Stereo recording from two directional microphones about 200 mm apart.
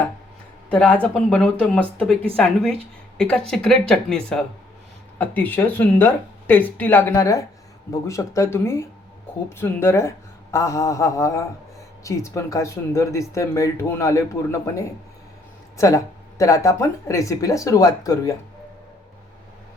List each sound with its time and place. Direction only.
0.7 s speech: 5° left (ahead or behind)